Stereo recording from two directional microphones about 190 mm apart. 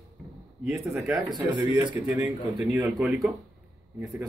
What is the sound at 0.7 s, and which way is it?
Speech, 15° right (ahead or behind).